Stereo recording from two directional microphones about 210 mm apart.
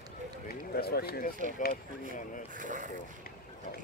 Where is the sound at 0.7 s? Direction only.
45° left (ahead or behind).